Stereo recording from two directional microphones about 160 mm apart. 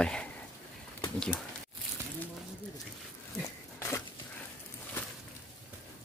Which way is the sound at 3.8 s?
20° left (ahead or behind).